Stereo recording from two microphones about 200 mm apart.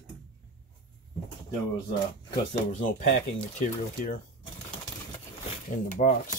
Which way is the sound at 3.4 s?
40° left (ahead or behind).